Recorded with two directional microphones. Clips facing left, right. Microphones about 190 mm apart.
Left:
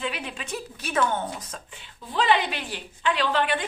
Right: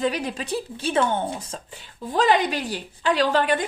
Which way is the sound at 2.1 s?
45° right (ahead or behind).